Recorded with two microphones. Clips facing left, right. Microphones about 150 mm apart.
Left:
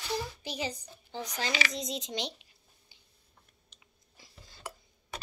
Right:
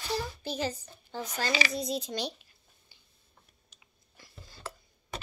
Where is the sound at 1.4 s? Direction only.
35° right (ahead or behind).